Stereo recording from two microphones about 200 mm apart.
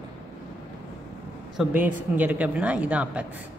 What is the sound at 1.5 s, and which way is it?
Speech, 10° right (ahead or behind).